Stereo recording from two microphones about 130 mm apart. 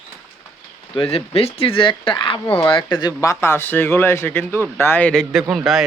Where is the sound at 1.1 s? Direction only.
50° left (ahead or behind).